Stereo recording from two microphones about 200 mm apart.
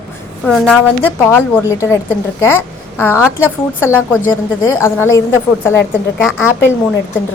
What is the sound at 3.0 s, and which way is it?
Speech, 10° left (ahead or behind).